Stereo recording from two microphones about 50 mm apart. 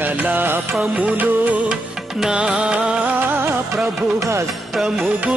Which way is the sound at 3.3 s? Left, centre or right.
Right.